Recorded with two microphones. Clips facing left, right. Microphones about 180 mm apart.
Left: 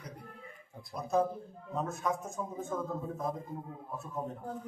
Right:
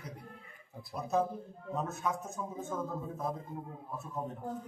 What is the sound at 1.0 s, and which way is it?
A man's voice, centre (ahead or behind).